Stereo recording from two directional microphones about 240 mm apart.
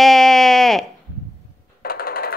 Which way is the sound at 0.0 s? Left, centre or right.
Centre.